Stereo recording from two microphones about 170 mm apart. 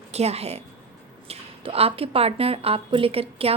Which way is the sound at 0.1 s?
40° right (ahead or behind).